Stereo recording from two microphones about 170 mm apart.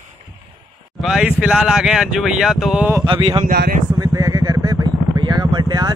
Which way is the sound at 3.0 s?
30° right (ahead or behind).